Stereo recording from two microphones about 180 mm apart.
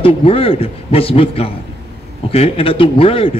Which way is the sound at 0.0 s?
30° left (ahead or behind).